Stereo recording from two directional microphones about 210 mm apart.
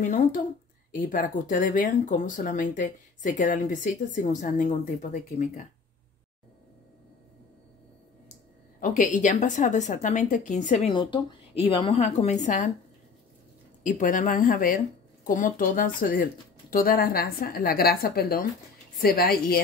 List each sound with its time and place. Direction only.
0.0 s speech: 35° left (ahead or behind)
8.7 s speech: 40° left (ahead or behind)
11.0 s a woman's voice: 25° left (ahead or behind)
13.8 s a woman's voice: 40° left (ahead or behind)